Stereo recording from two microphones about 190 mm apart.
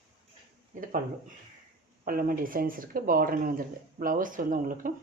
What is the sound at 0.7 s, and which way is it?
Speech, 45° right (ahead or behind).